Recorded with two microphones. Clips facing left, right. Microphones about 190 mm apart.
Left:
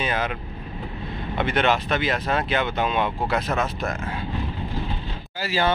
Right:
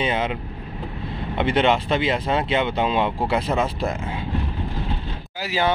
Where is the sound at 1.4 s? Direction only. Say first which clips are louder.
Right 3 dB; 25° right (ahead or behind).